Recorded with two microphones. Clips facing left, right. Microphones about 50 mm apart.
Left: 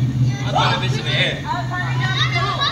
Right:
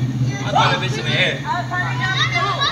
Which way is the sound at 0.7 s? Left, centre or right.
Centre.